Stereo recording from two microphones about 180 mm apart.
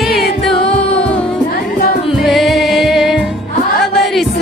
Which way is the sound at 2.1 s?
Centre (ahead or behind).